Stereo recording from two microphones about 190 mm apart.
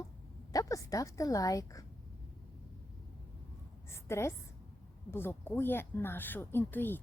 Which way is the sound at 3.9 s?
15° left (ahead or behind).